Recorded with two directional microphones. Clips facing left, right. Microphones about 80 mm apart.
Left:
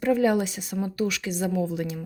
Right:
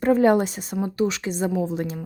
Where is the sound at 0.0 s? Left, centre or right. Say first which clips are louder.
Right 4 dB; right.